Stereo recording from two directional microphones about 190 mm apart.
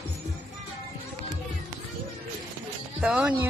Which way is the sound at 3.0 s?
5° right (ahead or behind).